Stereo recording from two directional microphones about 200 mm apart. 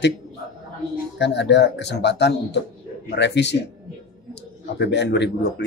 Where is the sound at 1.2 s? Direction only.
60° left (ahead or behind).